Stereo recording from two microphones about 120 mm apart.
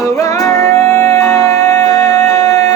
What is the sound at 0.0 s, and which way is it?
Music, 25° left (ahead or behind).